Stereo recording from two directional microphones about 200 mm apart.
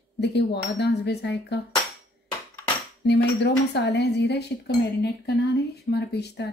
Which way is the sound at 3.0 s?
55° left (ahead or behind).